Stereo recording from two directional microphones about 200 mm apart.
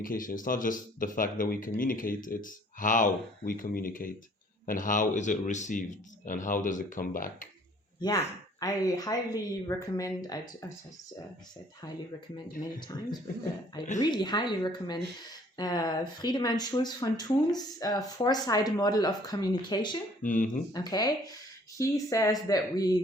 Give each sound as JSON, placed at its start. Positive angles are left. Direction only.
{"t": 0.0, "sound": "speech", "side_deg": 45}
{"t": 8.6, "sound": "speech", "side_deg": 20}
{"t": 14.0, "sound": "speech", "side_deg": 20}
{"t": 20.2, "sound": "speech", "side_deg": 40}
{"t": 20.7, "sound": "speech", "side_deg": 20}